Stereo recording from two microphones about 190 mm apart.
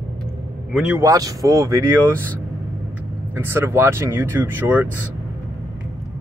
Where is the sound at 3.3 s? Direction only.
10° right (ahead or behind).